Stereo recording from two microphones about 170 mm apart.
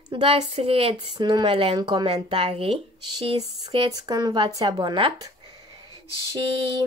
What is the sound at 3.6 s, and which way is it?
Speech, 25° right (ahead or behind).